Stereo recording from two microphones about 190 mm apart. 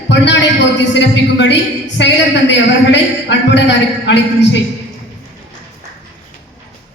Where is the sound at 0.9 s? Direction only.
70° left (ahead or behind).